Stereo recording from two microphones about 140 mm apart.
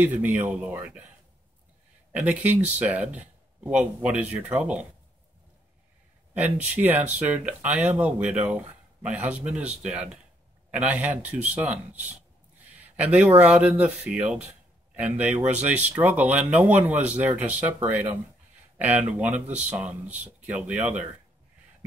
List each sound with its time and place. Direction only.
0.0 s speech: 10° right (ahead or behind)
2.1 s speech: 10° right (ahead or behind)
6.3 s speech: 10° right (ahead or behind)
12.6 s a sound: 10° right (ahead or behind)
13.4 s speech: 10° right (ahead or behind)